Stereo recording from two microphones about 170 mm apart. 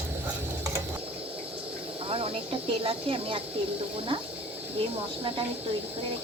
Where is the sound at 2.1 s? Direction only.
35° right (ahead or behind).